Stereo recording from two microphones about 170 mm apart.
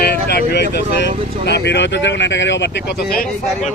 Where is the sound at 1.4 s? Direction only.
85° left; by 3.2 s 65° left (ahead or behind).